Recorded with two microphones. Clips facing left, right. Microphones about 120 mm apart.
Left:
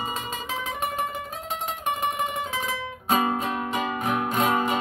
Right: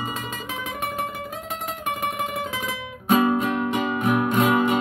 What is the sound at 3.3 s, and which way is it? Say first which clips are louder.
Music: right 5 dB; 30° left (ahead or behind).